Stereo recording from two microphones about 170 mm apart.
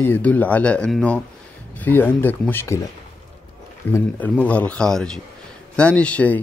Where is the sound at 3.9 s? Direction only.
10° left (ahead or behind).